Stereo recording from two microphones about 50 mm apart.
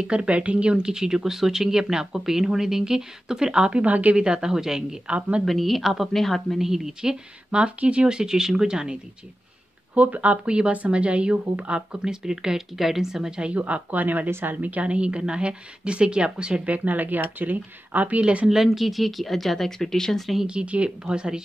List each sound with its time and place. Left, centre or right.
0.0 s speech: centre
3.8 s speech: right
4.2 s speech: centre
5.4 s speech: centre
6.7 s speech: centre
7.5 s speech: right
9.9 s a woman's voice: right
12.0 s speech: centre
13.4 s a woman's voice: right
16.7 s a woman's voice: right
18.5 s speech: centre
20.4 s a woman's voice: right